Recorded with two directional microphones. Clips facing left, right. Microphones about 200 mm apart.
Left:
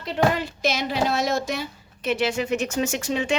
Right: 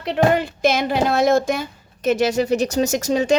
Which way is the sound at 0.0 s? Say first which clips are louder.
Right 5 dB; 60° right (ahead or behind).